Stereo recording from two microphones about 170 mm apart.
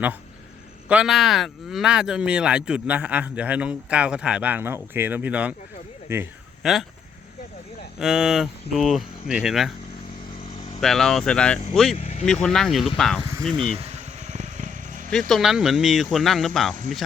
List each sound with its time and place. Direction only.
0.9 s speech: 5° right (ahead or behind)
6.6 s speech: centre (ahead or behind)
7.9 s speech: 5° right (ahead or behind)
10.8 s speech: centre (ahead or behind)
11.9 s speech: 40° left (ahead or behind)
12.2 s speech: 5° left (ahead or behind)
13.7 s a sound: 40° right (ahead or behind)
15.1 s speech: centre (ahead or behind)